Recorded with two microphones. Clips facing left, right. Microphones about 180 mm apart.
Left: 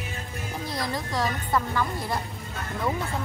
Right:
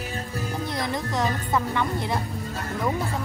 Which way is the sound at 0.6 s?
20° right (ahead or behind).